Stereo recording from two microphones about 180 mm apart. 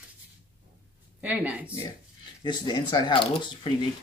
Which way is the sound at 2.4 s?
25° left (ahead or behind).